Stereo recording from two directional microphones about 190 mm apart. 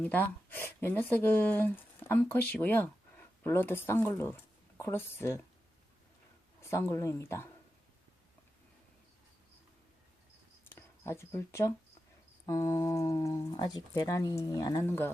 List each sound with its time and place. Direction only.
0.0 s speech: 10° left (ahead or behind)
6.6 s humming: 15° left (ahead or behind)
10.7 s speech: 15° left (ahead or behind)
12.5 s humming: 15° left (ahead or behind)